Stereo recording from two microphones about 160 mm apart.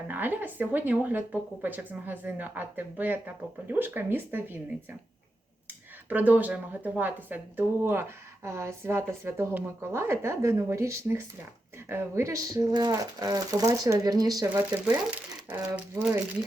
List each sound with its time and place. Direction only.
0.1 s speech: 10° right (ahead or behind)
6.1 s speech: 10° right (ahead or behind)